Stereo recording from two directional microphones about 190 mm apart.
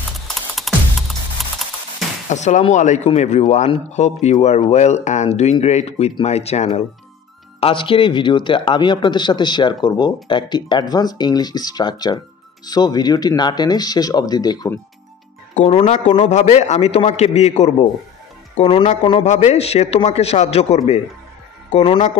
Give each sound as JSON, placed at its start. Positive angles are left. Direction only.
{"t": 0.3, "sound": "music", "side_deg": 0}
{"t": 2.2, "sound": "speech", "side_deg": 40}
{"t": 15.5, "sound": "speech", "side_deg": 35}